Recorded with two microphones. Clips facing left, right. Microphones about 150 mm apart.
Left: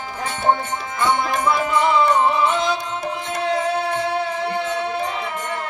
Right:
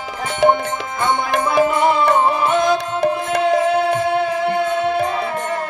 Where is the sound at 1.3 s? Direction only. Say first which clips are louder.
Right 4 dB; 60° right (ahead or behind).